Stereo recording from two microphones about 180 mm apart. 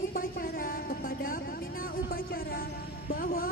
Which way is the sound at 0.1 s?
50° left (ahead or behind).